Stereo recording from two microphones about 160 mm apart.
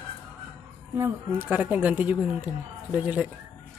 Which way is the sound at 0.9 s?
15° right (ahead or behind).